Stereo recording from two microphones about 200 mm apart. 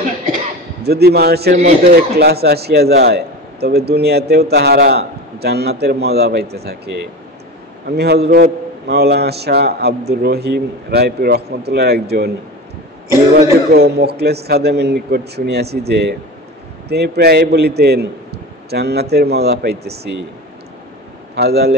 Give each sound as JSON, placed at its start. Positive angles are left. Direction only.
{"t": 0.8, "sound": "a man's voice", "side_deg": -55}
{"t": 7.9, "sound": "a man's voice", "side_deg": -55}
{"t": 13.3, "sound": "a man's voice", "side_deg": -55}
{"t": 21.4, "sound": "a man's voice", "side_deg": -55}